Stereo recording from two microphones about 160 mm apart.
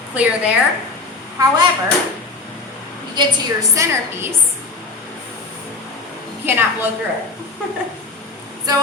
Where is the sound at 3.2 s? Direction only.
25° right (ahead or behind).